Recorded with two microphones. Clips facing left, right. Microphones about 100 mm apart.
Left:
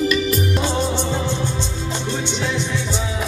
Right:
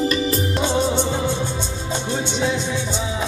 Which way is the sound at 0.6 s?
15° right (ahead or behind).